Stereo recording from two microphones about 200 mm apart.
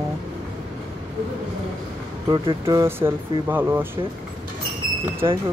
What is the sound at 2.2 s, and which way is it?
Speech, 20° right (ahead or behind).